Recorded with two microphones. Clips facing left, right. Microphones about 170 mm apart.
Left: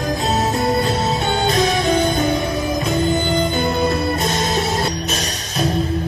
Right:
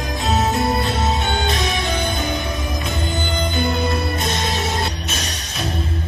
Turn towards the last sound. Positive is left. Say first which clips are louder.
# left 5 dB
turn(degrees=40)  # may be behind; listen again after turning